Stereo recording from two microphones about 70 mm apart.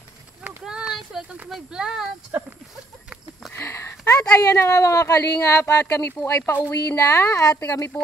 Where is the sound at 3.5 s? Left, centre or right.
Left.